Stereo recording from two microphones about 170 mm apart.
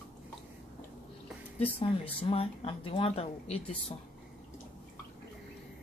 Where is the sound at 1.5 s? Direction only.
35° left (ahead or behind).